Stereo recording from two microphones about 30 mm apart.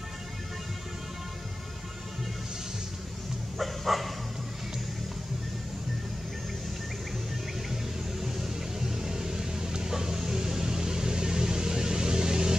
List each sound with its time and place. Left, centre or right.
3.5 s dog: centre
7.7 s music: centre